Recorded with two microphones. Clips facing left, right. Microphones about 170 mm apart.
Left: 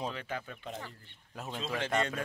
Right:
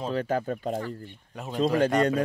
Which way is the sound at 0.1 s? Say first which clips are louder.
Right 13 dB; 40° right (ahead or behind).